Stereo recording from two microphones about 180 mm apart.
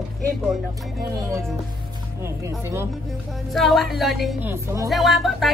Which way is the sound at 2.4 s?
15° right (ahead or behind).